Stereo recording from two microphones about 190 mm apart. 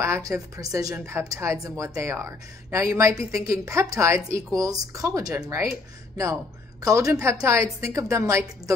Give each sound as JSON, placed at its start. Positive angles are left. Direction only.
{"t": 0.0, "sound": "a woman's voice", "side_deg": -15}